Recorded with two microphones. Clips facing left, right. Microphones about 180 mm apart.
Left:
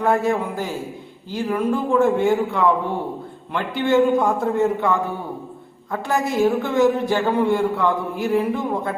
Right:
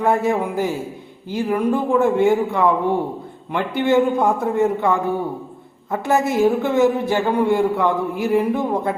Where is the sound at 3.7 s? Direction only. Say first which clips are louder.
Even; 20° right (ahead or behind).